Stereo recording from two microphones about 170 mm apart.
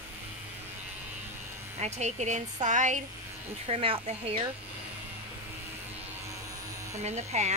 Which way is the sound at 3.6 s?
35° right (ahead or behind).